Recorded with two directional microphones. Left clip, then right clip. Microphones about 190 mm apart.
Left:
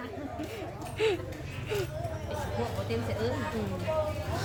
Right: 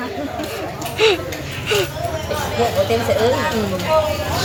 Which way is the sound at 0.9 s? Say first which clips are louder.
Right 13 dB; 10° left (ahead or behind).